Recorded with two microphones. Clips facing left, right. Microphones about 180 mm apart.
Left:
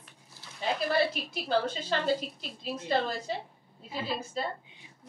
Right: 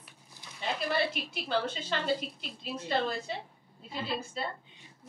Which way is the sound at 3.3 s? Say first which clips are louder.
Left 3 dB; 40° left (ahead or behind).